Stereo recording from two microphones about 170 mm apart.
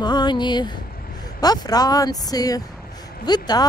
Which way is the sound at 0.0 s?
25° left (ahead or behind).